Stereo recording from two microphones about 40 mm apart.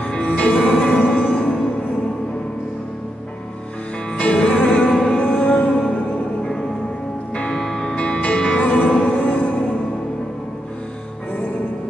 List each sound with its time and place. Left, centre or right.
0.0 s music: left
4.2 s music: left
4.8 s music: centre
5.2 s music: left
7.4 s music: centre
7.9 s music: left